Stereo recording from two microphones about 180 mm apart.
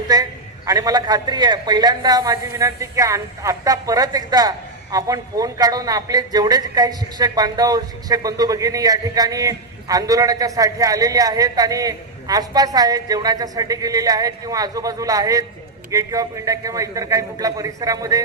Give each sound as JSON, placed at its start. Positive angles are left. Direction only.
{"t": 0.1, "sound": "a man's voice", "side_deg": -20}